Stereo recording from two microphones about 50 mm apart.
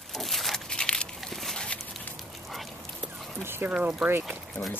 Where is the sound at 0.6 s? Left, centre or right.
Centre.